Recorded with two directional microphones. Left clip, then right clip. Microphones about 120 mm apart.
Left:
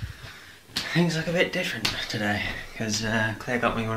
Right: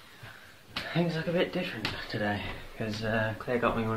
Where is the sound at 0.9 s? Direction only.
5° left (ahead or behind).